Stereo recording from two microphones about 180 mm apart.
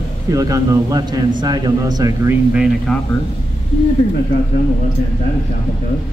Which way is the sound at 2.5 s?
Centre (ahead or behind).